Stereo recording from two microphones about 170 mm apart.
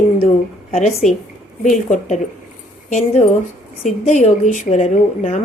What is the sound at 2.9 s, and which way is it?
A woman's voice, 45° left (ahead or behind).